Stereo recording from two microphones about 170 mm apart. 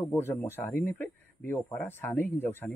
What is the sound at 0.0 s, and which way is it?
Speech, 15° left (ahead or behind).